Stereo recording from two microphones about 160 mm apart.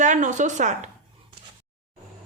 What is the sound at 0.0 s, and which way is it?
Speech, 50° right (ahead or behind).